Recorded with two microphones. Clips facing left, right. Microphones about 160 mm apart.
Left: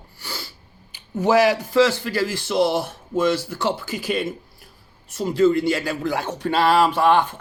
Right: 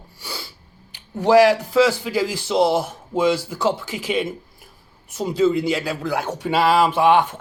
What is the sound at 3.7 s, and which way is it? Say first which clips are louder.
Speech: right 2 dB; 90° right.